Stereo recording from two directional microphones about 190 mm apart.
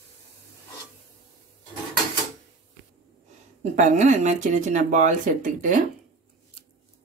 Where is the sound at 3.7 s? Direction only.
40° right (ahead or behind).